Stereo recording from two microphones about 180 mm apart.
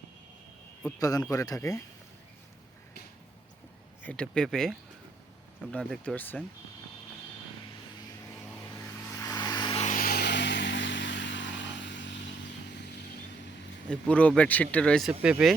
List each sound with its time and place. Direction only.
0.9 s speech: 20° left (ahead or behind)
4.0 s speech: 5° left (ahead or behind)
9.1 s vehicle: 20° left (ahead or behind)
9.8 s vehicle: 50° left (ahead or behind); by 12.2 s 80° left
13.9 s speech: 5° left (ahead or behind)